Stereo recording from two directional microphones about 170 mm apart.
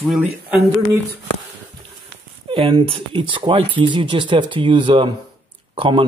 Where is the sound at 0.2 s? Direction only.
10° right (ahead or behind).